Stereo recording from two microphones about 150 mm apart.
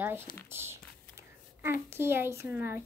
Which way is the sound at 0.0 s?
15° right (ahead or behind).